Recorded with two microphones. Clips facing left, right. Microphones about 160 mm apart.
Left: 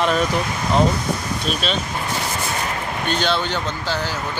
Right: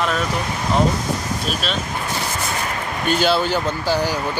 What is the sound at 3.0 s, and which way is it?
Speech, 5° right (ahead or behind).